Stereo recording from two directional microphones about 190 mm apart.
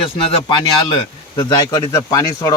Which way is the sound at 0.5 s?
25° left (ahead or behind).